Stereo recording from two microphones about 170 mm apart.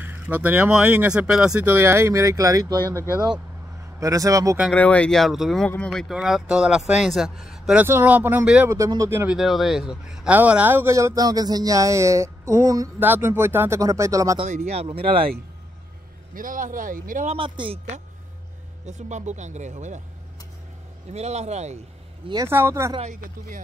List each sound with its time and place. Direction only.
0.0 s speech: 10° right (ahead or behind)
4.0 s speech: 20° right (ahead or behind)
4.7 s speech: 10° left (ahead or behind); by 14.4 s 20° right (ahead or behind)
14.4 s speech: 40° right (ahead or behind)
16.3 s speech: 50° right (ahead or behind)
17.4 s speech: 30° right (ahead or behind)
18.9 s speech: 45° right (ahead or behind)
21.1 s speech: 40° right (ahead or behind)
22.3 s speech: 15° right (ahead or behind)
22.9 s speech: 50° right (ahead or behind)